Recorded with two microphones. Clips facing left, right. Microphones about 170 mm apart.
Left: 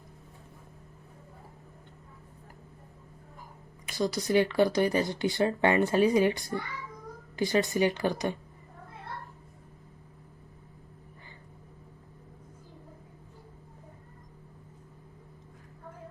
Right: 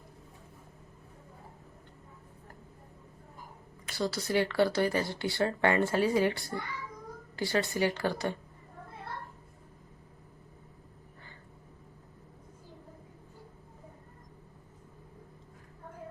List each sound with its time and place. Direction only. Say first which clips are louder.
3.8 s speech: left 3 dB; 15° left (ahead or behind)